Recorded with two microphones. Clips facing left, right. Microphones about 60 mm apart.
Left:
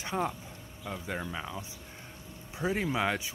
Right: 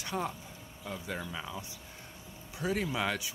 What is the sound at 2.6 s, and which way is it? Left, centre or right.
Speech, left.